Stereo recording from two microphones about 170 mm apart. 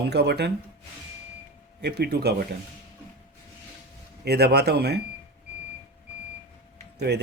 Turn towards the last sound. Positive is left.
turn(degrees=-80)